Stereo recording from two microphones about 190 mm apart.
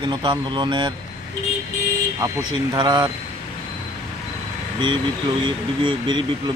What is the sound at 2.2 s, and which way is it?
Speech, 20° right (ahead or behind).